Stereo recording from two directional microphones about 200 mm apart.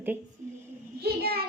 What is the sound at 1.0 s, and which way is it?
Speech, 50° right (ahead or behind).